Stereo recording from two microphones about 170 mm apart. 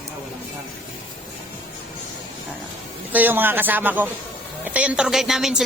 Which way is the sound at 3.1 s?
10° right (ahead or behind).